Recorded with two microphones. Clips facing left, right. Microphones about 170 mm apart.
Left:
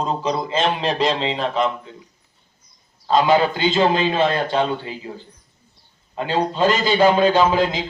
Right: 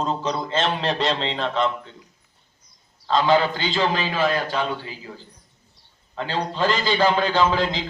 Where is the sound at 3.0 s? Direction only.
20° left (ahead or behind).